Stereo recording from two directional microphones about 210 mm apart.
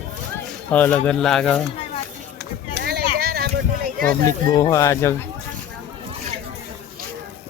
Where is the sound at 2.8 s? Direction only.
50° right (ahead or behind).